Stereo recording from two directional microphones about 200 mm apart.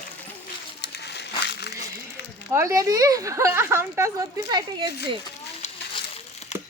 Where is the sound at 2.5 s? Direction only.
15° right (ahead or behind).